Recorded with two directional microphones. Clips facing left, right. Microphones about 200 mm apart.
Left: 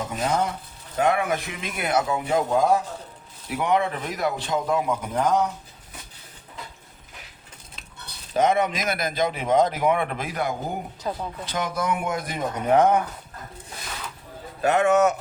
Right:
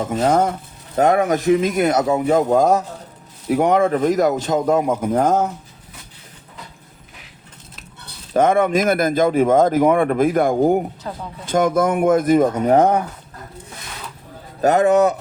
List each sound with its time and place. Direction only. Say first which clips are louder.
0.2 s speech: right 8 dB; 50° right (ahead or behind)
8.3 s speech: right 6 dB; 50° right (ahead or behind)
11.1 s speech: left 1 dB; 15° left (ahead or behind)
11.4 s speech: right 11 dB; 50° right (ahead or behind)
14.6 s speech: right 5 dB; 40° right (ahead or behind)